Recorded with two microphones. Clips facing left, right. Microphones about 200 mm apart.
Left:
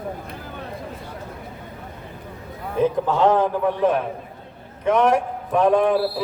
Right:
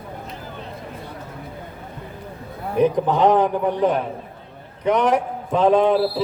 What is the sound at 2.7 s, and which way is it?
A man's voice, 15° right (ahead or behind).